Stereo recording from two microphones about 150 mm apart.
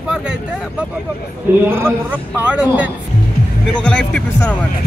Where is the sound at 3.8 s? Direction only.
5° left (ahead or behind).